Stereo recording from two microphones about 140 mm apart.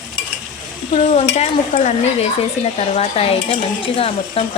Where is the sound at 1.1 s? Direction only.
50° left (ahead or behind).